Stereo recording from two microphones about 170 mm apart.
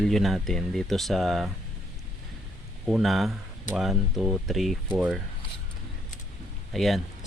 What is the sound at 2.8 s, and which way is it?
Speech, centre (ahead or behind).